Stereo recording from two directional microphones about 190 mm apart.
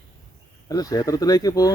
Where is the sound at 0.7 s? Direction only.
20° left (ahead or behind).